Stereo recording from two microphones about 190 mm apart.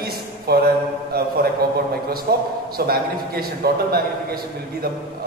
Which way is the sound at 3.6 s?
55° right (ahead or behind).